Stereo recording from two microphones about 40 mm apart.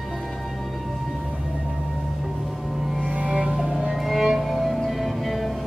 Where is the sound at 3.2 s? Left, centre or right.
Right.